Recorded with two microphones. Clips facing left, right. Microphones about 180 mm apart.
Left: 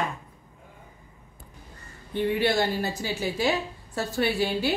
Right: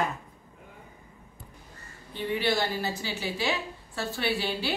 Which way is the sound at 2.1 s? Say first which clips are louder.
Left 6 dB; 55° left (ahead or behind).